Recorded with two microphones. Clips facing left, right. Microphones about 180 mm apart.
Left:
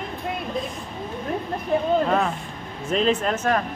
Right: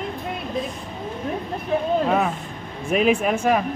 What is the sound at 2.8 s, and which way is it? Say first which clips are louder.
Speech: right 2 dB; 10° right (ahead or behind).